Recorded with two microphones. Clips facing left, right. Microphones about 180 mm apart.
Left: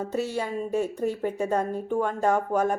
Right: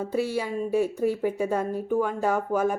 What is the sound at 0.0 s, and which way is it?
Speech, 10° right (ahead or behind).